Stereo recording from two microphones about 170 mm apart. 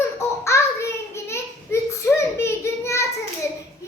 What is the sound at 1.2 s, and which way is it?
Child singing, 15° left (ahead or behind).